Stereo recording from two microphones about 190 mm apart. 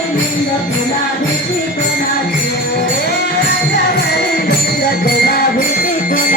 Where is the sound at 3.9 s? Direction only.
60° left (ahead or behind).